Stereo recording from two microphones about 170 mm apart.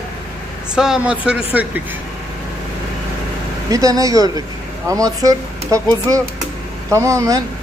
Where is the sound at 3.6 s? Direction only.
20° right (ahead or behind).